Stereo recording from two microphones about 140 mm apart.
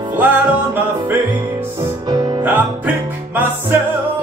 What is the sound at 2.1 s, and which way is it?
Music, 25° right (ahead or behind).